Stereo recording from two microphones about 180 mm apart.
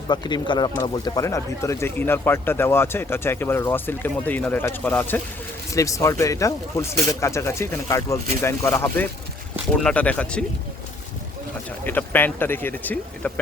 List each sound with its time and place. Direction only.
0.1 s speech: 25° left (ahead or behind); by 10.4 s 5° left (ahead or behind)
11.9 s speech: 10° left (ahead or behind)